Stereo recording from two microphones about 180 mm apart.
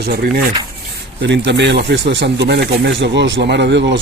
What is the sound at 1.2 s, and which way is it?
Speech, 75° right (ahead or behind).